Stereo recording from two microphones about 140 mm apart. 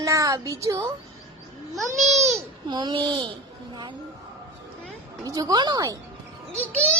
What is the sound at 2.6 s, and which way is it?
Speech, 30° right (ahead or behind).